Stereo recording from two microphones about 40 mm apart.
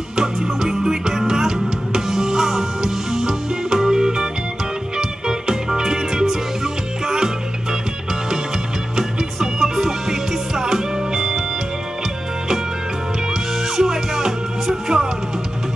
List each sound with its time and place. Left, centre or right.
0.1 s music: centre
9.4 s music: centre
13.7 s music: centre